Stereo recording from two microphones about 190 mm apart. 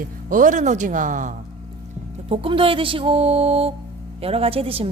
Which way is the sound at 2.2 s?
30° right (ahead or behind).